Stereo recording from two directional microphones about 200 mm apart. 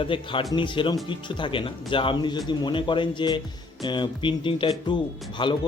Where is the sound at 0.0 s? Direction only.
25° left (ahead or behind).